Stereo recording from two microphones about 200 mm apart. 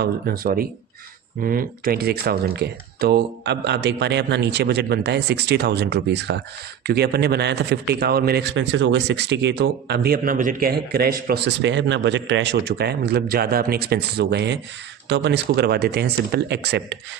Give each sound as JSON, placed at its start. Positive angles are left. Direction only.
{"t": 0.0, "sound": "speech", "side_deg": -50}